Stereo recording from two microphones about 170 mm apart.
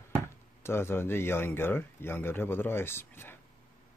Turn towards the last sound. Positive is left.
turn(degrees=15)  # may be behind; listen again after turning